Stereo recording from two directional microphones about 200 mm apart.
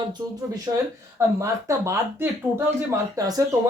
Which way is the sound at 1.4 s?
15° right (ahead or behind).